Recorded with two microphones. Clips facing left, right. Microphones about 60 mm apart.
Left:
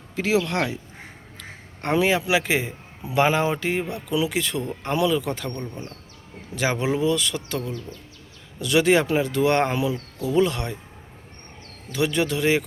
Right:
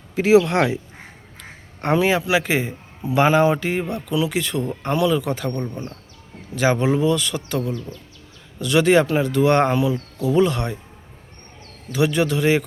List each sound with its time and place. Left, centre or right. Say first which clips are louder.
0.2 s speech: right 7 dB; centre
1.4 s a sound: right 4 dB; centre
2.2 s a man's voice: right 2 dB; centre
11.9 s a man's voice: right 4 dB; centre